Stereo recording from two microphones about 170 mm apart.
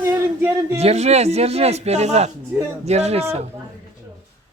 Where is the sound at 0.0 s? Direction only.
10° right (ahead or behind).